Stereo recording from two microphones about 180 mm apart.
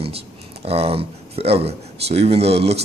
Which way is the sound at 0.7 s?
35° right (ahead or behind).